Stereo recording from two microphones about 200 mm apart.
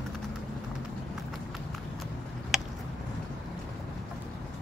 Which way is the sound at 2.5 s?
Centre (ahead or behind).